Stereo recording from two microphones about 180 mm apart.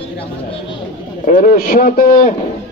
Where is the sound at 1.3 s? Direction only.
50° left (ahead or behind).